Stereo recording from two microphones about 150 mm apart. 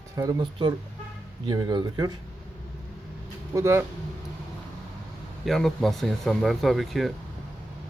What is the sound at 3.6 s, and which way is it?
Speech, 15° right (ahead or behind).